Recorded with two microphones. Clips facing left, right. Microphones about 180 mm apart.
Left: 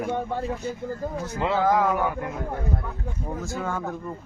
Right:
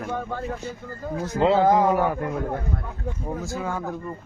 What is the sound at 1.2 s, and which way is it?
Speech, 30° right (ahead or behind).